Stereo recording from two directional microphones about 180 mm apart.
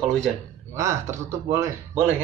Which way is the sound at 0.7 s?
15° right (ahead or behind).